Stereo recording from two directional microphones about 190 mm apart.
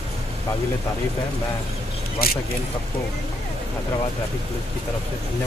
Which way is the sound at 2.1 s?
55° left (ahead or behind).